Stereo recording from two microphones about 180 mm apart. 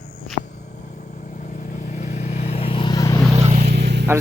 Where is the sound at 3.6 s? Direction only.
60° right (ahead or behind).